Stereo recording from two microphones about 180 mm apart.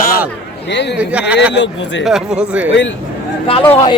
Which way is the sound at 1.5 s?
85° left.